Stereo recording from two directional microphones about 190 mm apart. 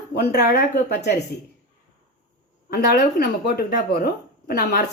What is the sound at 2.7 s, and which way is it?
Speech, 55° left (ahead or behind).